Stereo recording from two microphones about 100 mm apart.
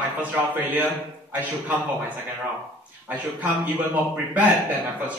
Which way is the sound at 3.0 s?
15° right (ahead or behind).